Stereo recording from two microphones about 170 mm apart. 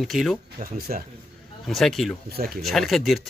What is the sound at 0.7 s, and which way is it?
Speech, 60° right (ahead or behind).